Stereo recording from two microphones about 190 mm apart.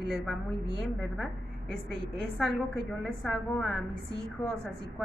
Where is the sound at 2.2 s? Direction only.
Centre (ahead or behind).